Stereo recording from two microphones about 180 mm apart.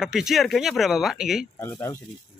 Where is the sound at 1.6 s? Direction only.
15° left (ahead or behind).